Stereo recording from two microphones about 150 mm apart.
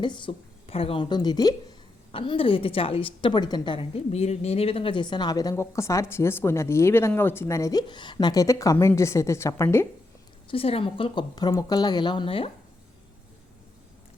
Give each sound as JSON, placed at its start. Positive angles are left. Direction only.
{"t": 0.0, "sound": "a woman's voice", "side_deg": 30}
{"t": 10.5, "sound": "a woman's voice", "side_deg": 40}